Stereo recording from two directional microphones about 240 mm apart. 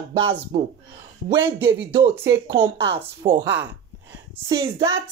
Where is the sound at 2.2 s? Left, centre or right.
Right.